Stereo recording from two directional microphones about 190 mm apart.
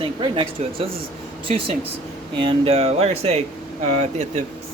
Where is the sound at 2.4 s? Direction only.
30° right (ahead or behind).